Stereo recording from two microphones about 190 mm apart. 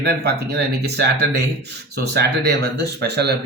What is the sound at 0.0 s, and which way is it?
Speech, 60° right (ahead or behind).